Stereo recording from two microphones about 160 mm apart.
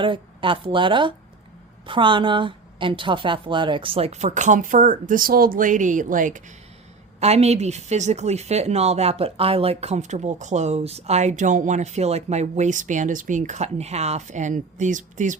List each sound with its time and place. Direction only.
0.0 s a woman's voice: 30° right (ahead or behind); by 6.4 s 55° right (ahead or behind)
7.2 s a woman's voice: 40° right (ahead or behind)